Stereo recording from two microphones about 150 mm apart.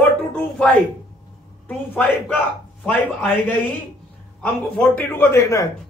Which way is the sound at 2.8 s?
10° left (ahead or behind).